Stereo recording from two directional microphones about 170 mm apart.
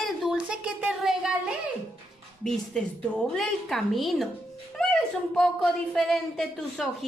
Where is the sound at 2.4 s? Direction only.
Centre (ahead or behind).